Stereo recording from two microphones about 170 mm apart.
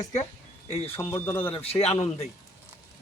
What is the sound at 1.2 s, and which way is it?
Speech, 10° left (ahead or behind).